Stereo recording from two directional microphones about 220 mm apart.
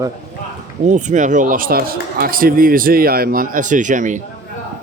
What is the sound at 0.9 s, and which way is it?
A man's voice, 35° right (ahead or behind).